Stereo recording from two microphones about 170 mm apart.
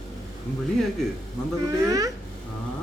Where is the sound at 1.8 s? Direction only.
20° right (ahead or behind).